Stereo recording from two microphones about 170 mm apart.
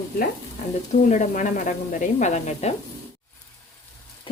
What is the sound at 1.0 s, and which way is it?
Speech, 45° left (ahead or behind).